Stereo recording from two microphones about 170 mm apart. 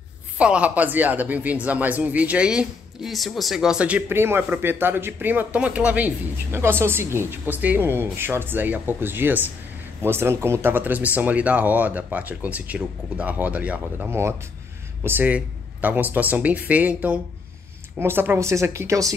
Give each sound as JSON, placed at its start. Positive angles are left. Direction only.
{"t": 0.4, "sound": "speech", "side_deg": -5}